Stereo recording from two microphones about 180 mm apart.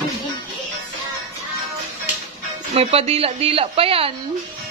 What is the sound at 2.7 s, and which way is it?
A woman's voice, 35° right (ahead or behind).